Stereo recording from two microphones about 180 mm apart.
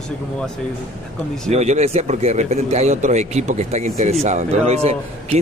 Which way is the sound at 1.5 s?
35° right (ahead or behind).